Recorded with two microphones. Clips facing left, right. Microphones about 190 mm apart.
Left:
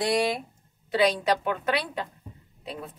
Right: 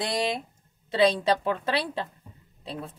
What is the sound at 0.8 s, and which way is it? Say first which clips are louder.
Speech: right 1 dB; 25° right (ahead or behind).